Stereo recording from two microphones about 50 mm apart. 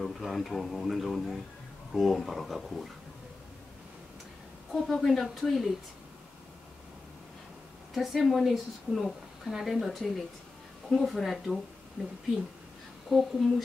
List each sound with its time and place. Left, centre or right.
0.2 s a woman's voice: centre
4.7 s a woman's voice: centre
7.9 s a woman's voice: centre
12.0 s speech: centre
13.1 s a woman's voice: centre